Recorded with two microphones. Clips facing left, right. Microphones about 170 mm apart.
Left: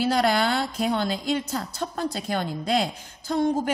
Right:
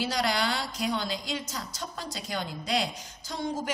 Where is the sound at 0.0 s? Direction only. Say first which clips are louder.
Left 7 dB; 55° left (ahead or behind).